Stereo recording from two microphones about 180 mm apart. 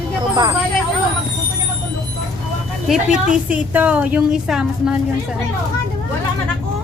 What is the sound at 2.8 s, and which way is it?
A woman's voice, 5° right (ahead or behind).